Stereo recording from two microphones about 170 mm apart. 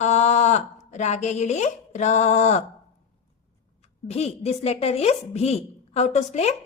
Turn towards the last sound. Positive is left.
turn(degrees=40)  # may be behind; listen again after turning